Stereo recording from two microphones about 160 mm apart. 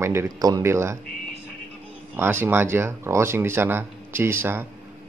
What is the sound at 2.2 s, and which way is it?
Speech, 15° right (ahead or behind).